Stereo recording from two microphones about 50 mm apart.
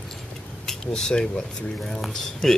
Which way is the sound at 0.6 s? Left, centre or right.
Centre.